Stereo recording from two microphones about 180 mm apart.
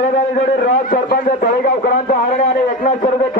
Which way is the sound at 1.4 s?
70° left (ahead or behind).